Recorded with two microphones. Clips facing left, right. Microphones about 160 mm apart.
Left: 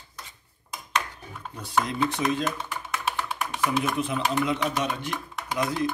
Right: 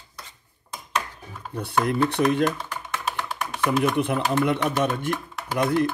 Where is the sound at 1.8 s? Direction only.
60° right (ahead or behind).